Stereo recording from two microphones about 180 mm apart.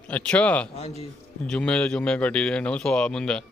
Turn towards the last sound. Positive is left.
turn(degrees=5)  # may be behind; listen again after turning